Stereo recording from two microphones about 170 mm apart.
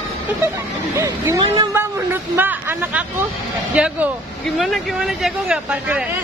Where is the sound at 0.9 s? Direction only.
20° right (ahead or behind).